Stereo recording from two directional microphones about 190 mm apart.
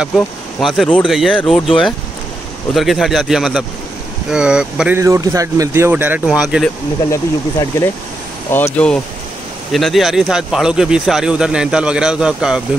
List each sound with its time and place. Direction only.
0.0 s speech: centre (ahead or behind)
2.7 s speech: centre (ahead or behind)
7.1 s speech: 15° left (ahead or behind); by 12.6 s 5° right (ahead or behind)